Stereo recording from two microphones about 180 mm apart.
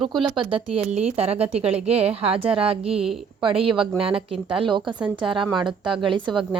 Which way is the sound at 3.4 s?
30° right (ahead or behind).